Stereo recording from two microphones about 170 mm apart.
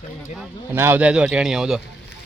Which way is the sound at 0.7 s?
15° right (ahead or behind).